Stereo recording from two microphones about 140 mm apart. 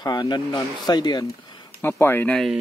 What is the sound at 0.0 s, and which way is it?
Speech, 30° left (ahead or behind).